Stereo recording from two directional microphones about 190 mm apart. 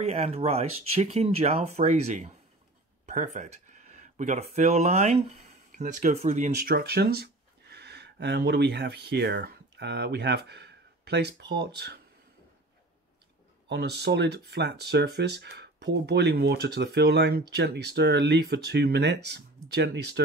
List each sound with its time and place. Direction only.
0.0 s speech: 35° right (ahead or behind); by 12.0 s 60° right (ahead or behind)
13.7 s speech: 60° right (ahead or behind)